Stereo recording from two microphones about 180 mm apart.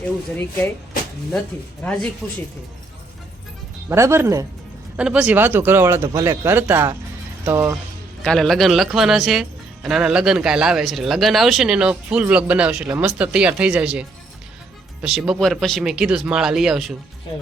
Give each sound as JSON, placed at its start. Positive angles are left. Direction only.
{"t": 1.8, "sound": "speech", "side_deg": 5}
{"t": 3.8, "sound": "speech", "side_deg": -15}
{"t": 4.9, "sound": "speech", "side_deg": -5}
{"t": 8.2, "sound": "speech", "side_deg": 0}